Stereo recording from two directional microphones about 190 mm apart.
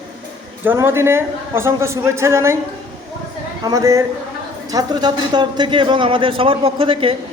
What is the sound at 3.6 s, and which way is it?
A man's voice, 20° right (ahead or behind).